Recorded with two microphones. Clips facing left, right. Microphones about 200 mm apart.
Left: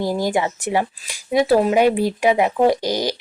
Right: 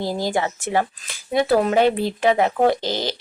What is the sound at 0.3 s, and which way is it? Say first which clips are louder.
Speech: left 2 dB; 15° left (ahead or behind).